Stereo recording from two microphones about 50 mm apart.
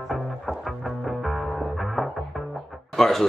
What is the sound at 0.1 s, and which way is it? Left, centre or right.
Music, centre.